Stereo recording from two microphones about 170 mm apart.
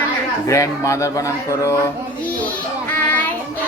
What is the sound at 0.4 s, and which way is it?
Speech, 20° left (ahead or behind).